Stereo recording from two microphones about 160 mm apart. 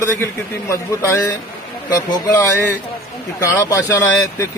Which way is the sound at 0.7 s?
20° left (ahead or behind).